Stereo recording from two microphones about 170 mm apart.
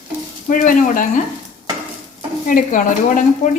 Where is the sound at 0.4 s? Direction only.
50° left (ahead or behind).